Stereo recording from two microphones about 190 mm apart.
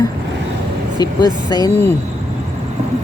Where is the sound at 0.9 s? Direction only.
20° left (ahead or behind).